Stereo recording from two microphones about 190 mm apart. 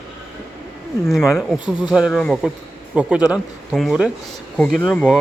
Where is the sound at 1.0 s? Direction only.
Centre (ahead or behind).